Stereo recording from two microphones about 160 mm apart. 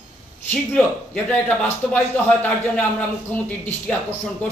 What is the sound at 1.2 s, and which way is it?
Speech, 10° left (ahead or behind).